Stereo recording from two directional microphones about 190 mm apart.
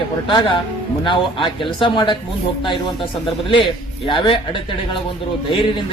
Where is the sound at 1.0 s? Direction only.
25° left (ahead or behind).